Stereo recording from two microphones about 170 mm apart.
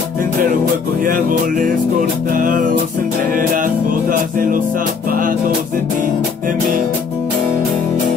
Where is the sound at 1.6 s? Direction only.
55° right (ahead or behind).